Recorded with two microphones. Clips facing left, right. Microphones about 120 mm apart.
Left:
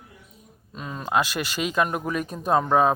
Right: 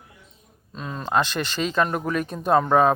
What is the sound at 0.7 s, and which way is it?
Speech, 5° left (ahead or behind).